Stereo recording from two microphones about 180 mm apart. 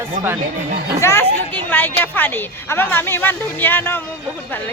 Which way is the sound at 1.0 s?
15° left (ahead or behind).